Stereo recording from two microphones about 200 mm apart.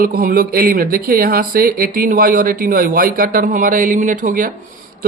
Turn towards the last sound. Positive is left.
turn(degrees=-40)  # may be behind; listen again after turning